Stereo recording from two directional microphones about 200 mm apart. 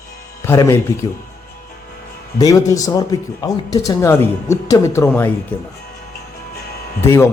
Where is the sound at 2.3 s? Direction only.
15° left (ahead or behind).